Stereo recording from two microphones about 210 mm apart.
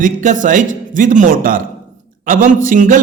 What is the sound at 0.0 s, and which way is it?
A man's voice, 40° right (ahead or behind).